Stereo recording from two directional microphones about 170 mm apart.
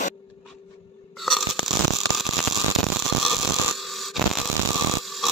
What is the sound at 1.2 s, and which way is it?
Biting, centre (ahead or behind).